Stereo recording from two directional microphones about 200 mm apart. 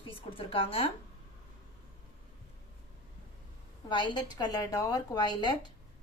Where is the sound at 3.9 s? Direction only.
20° left (ahead or behind).